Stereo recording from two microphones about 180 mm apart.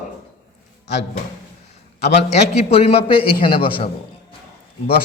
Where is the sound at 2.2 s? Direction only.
35° left (ahead or behind).